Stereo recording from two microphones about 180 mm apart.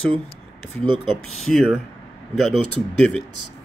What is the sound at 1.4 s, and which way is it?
Speech, centre (ahead or behind).